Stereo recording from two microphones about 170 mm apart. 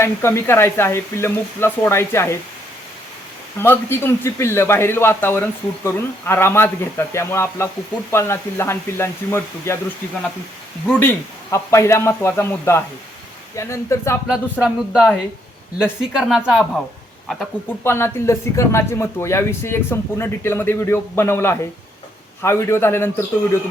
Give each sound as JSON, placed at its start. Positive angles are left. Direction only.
{"t": 0.0, "sound": "a man's voice", "side_deg": 15}
{"t": 3.6, "sound": "a man's voice", "side_deg": 15}
{"t": 11.5, "sound": "a man's voice", "side_deg": 15}
{"t": 14.3, "sound": "speech", "side_deg": -5}
{"t": 17.8, "sound": "a man's voice", "side_deg": 15}